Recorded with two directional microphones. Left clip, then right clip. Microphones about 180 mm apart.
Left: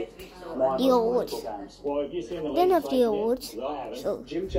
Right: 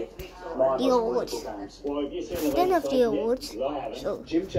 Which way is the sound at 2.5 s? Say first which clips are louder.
Left 1 dB; 10° left (ahead or behind).